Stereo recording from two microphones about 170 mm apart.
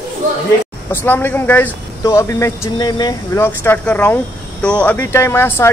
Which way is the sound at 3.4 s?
15° left (ahead or behind).